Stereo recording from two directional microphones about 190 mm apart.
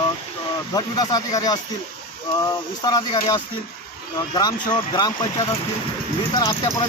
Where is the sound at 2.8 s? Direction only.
20° left (ahead or behind).